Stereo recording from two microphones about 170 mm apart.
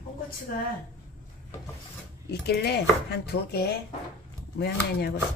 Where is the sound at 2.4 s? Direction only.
75° left (ahead or behind).